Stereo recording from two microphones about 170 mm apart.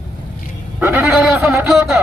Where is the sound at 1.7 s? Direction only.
Centre (ahead or behind).